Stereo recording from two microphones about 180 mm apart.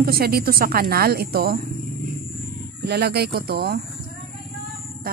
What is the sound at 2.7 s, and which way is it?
Speech, 65° right (ahead or behind).